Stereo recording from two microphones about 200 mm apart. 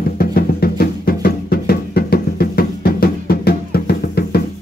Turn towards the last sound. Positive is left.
turn(degrees=50)  # may be behind; listen again after turning